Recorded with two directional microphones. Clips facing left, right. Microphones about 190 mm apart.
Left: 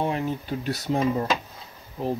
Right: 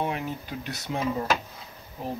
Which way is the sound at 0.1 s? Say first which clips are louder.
Left 5 dB; 35° left (ahead or behind).